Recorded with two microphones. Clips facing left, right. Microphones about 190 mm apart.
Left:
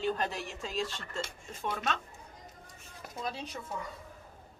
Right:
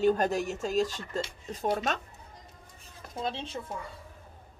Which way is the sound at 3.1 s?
25° right (ahead or behind).